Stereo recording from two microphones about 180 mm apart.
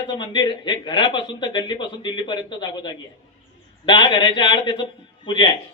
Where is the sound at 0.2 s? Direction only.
25° left (ahead or behind).